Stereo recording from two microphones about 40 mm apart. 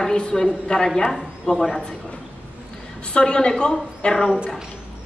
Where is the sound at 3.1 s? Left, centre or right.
Left.